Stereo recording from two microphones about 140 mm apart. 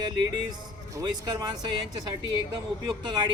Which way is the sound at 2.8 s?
30° right (ahead or behind).